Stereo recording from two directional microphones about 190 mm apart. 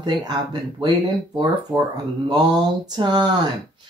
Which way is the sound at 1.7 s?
Centre (ahead or behind).